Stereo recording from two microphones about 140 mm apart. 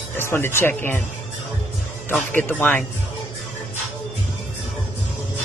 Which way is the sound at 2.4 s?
10° left (ahead or behind).